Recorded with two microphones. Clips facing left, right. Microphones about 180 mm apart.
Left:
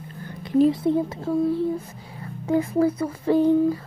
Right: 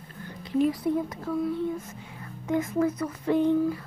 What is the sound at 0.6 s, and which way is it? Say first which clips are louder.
Speech: left 6 dB; 25° left (ahead or behind).